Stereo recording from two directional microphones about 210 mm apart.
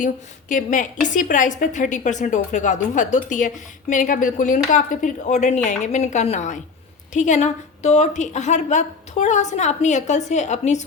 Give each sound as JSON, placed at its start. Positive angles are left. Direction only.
{"t": 0.0, "sound": "a woman's voice", "side_deg": 40}